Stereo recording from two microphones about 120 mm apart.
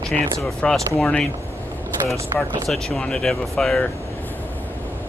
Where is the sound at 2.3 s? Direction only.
30° right (ahead or behind).